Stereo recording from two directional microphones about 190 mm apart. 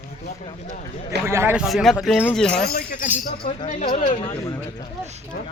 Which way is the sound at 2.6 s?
50° left (ahead or behind).